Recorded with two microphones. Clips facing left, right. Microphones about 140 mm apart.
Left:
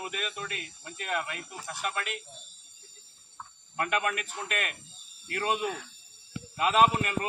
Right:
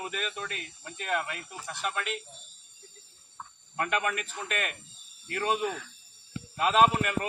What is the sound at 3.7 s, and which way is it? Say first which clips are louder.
A man's voice: even; 5° left (ahead or behind).